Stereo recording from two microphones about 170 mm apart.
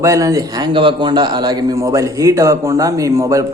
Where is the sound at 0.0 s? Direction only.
20° right (ahead or behind).